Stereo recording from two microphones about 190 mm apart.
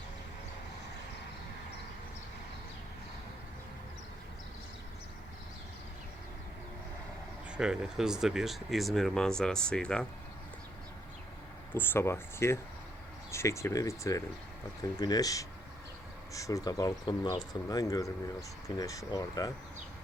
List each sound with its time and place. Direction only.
7.5 s speech: 5° right (ahead or behind)
11.7 s speech: 10° left (ahead or behind)